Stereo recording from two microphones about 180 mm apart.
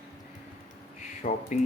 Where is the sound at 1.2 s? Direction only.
35° left (ahead or behind).